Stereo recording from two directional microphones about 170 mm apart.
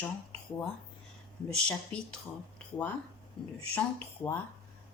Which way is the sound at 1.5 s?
5° left (ahead or behind).